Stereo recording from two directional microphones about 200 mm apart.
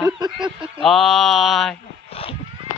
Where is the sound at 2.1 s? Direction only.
30° left (ahead or behind).